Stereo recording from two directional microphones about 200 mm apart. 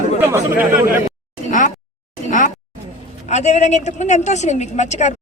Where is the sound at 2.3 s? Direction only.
40° left (ahead or behind).